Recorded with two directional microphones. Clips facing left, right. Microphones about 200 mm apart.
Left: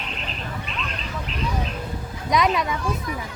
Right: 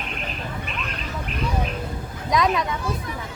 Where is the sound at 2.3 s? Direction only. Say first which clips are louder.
Even; centre (ahead or behind).